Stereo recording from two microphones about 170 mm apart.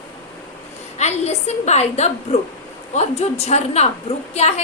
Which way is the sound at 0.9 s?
40° left (ahead or behind).